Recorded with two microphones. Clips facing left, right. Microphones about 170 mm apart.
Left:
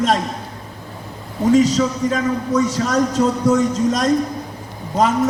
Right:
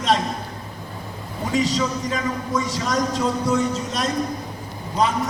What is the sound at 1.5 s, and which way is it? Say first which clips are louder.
Speech: left 7 dB; 45° left (ahead or behind).